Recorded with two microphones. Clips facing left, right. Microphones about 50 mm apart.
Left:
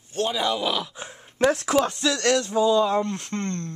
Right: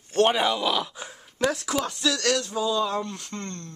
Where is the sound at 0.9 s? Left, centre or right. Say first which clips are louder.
Left 1 dB; centre.